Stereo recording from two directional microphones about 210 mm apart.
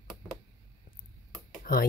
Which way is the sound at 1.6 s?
45° left (ahead or behind).